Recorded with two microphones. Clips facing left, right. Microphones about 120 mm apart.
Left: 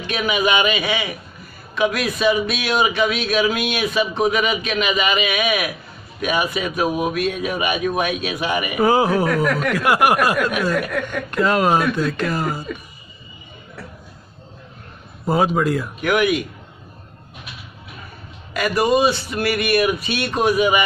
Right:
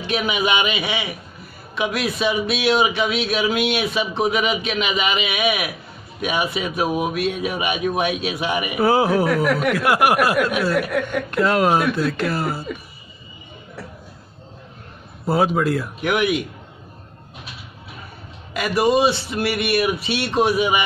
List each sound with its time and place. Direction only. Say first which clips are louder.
0.0 s a man's voice: left 1 dB; 20° right (ahead or behind)
8.7 s speech: even; 5° right (ahead or behind)
15.2 s speech: left 1 dB; centre (ahead or behind)
16.0 s a man's voice: left 3 dB; 20° right (ahead or behind)
18.5 s a man's voice: even; 20° right (ahead or behind)